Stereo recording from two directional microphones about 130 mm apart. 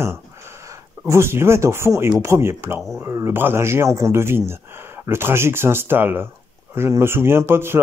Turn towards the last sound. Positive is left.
turn(degrees=-20)  # may be behind; listen again after turning